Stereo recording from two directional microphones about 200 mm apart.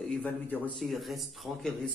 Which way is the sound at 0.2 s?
5° left (ahead or behind).